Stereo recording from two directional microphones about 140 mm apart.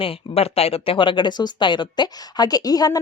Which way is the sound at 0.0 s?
40° left (ahead or behind).